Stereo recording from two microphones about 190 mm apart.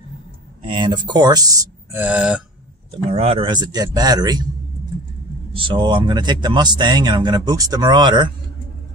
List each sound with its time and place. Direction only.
0.6 s speech: 25° right (ahead or behind); by 2.4 s 5° right (ahead or behind)
3.1 s speech: 30° right (ahead or behind)
5.5 s speech: 25° right (ahead or behind)